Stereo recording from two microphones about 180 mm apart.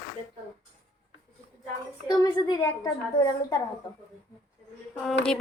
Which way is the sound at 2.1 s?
20° left (ahead or behind).